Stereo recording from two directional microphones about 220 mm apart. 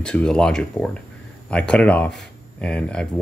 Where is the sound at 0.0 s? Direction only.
5° left (ahead or behind).